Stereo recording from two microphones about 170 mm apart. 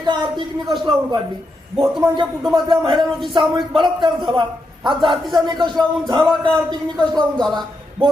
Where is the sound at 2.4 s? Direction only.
Centre (ahead or behind).